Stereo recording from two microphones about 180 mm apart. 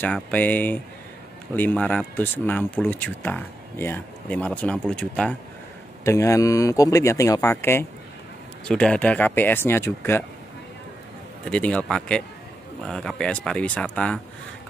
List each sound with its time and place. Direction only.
0.0 s speech: 10° left (ahead or behind)
6.0 s speech: 15° left (ahead or behind)
11.4 s speech: 5° left (ahead or behind)